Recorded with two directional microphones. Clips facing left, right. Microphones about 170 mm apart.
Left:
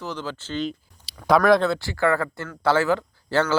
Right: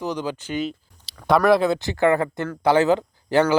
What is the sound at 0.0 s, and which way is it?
A man's voice, 15° right (ahead or behind).